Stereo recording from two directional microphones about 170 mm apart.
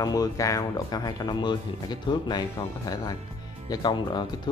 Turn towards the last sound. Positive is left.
turn(degrees=25)  # may be behind; listen again after turning